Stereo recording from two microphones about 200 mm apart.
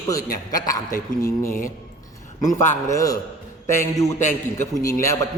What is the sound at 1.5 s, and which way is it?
Speech, 45° left (ahead or behind).